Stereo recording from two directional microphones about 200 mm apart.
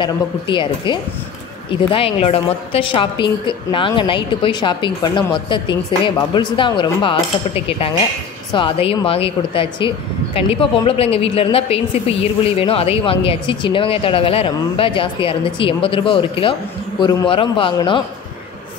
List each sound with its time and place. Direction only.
0.0 s a woman's voice: 25° left (ahead or behind)